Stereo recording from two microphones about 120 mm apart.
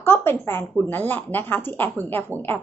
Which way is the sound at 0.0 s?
20° left (ahead or behind).